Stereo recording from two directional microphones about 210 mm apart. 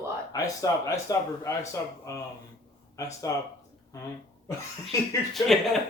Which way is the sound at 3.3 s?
15° left (ahead or behind).